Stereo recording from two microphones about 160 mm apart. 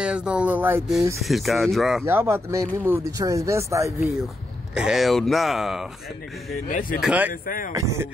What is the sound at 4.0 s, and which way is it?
Speech, centre (ahead or behind).